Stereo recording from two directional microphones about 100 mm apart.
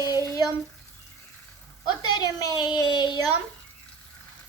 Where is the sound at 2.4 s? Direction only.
40° left (ahead or behind).